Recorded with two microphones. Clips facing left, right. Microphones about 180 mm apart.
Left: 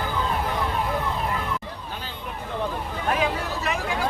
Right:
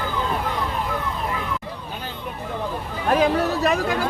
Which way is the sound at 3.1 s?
40° right (ahead or behind).